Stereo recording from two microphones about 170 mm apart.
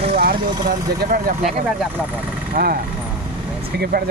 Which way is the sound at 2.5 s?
55° right (ahead or behind).